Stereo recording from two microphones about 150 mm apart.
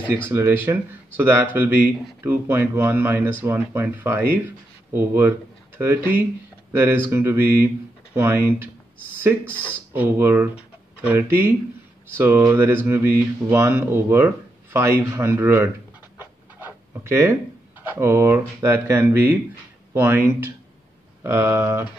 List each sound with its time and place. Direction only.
0.1 s speech: 15° right (ahead or behind)
9.5 s speech: 10° left (ahead or behind)
9.9 s speech: 15° right (ahead or behind)
16.2 s a sound: 15° right (ahead or behind)
17.9 s speech: 15° right (ahead or behind)